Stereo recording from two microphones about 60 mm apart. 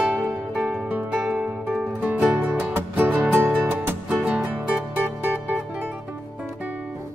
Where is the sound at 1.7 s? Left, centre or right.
Right.